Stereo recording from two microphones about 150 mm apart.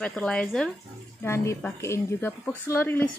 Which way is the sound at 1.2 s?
20° left (ahead or behind).